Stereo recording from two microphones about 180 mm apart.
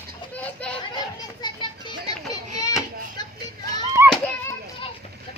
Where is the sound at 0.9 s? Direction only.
25° left (ahead or behind).